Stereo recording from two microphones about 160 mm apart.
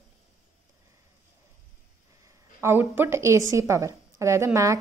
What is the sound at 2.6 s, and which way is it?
A woman's voice, 15° right (ahead or behind).